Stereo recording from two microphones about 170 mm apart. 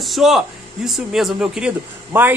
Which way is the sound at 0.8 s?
Centre (ahead or behind).